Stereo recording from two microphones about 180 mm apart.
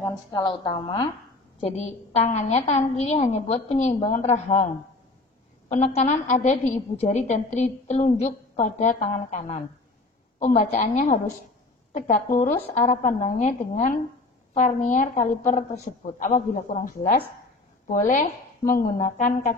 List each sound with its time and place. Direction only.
0.0 s a woman's voice: 25° left (ahead or behind)
5.7 s a woman's voice: 40° left (ahead or behind)